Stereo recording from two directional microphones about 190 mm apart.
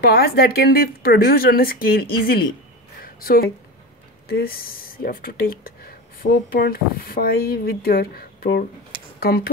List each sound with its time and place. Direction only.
0.0 s speech: 55° left (ahead or behind)
3.0 s a sound: 50° left (ahead or behind)
4.3 s speech: 50° left (ahead or behind)